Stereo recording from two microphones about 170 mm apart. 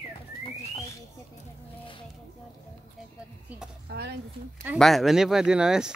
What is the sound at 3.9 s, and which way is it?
Speech, 75° right (ahead or behind).